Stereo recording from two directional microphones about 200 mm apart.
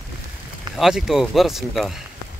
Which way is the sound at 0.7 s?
Centre (ahead or behind).